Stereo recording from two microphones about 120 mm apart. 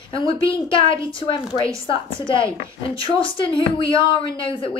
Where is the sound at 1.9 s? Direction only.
45° left (ahead or behind).